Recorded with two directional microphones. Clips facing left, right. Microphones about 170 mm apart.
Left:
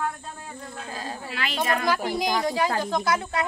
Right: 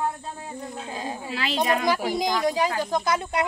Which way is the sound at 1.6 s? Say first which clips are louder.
Right 1 dB; 15° right (ahead or behind).